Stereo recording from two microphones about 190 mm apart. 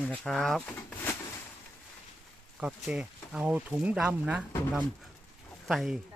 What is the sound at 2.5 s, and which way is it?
Speech, 5° right (ahead or behind).